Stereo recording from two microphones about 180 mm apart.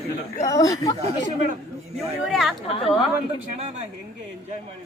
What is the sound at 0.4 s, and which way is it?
Speech, 20° left (ahead or behind).